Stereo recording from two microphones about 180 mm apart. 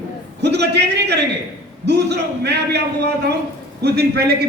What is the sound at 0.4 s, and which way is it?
A man's voice, 70° right (ahead or behind).